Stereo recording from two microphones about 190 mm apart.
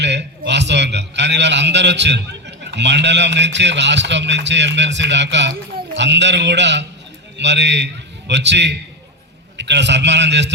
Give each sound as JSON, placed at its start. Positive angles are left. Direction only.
{"t": 0.0, "sound": "a man's voice", "side_deg": -65}